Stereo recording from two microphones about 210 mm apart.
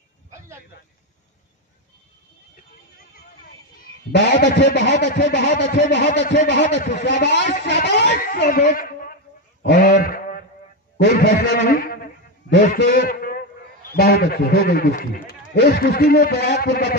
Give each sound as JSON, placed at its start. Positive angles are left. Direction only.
{"t": 4.1, "sound": "a man's voice", "side_deg": 50}
{"t": 9.6, "sound": "sheep", "side_deg": 50}
{"t": 11.0, "sound": "a man's voice", "side_deg": 45}